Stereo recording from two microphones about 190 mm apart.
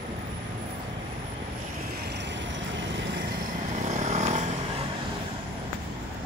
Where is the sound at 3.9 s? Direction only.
40° right (ahead or behind).